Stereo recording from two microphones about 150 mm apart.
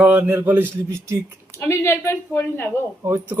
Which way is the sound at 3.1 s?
15° right (ahead or behind).